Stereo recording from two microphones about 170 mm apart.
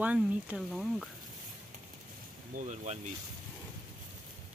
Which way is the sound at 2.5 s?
45° right (ahead or behind).